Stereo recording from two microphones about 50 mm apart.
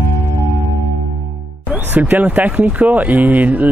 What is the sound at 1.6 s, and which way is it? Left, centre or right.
Music, right.